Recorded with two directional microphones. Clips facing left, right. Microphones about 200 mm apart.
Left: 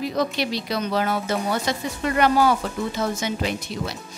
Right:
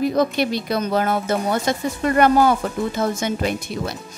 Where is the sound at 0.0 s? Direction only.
50° right (ahead or behind).